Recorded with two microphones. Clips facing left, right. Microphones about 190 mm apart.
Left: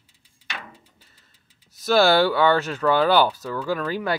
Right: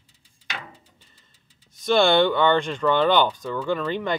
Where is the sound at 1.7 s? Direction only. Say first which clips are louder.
Left 1 dB; 5° left (ahead or behind).